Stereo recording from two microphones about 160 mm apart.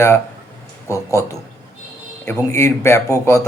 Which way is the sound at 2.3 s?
15° left (ahead or behind).